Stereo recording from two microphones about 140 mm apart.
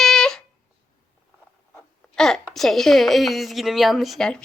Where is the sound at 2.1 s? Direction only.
5° left (ahead or behind).